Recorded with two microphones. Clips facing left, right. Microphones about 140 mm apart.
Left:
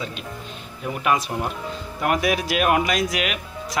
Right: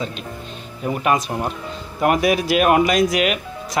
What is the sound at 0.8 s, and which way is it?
Speech, 45° right (ahead or behind).